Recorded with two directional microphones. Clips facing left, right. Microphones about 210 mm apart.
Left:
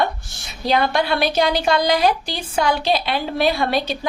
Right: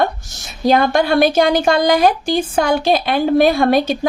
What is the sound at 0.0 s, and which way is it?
A woman's voice, 45° right (ahead or behind).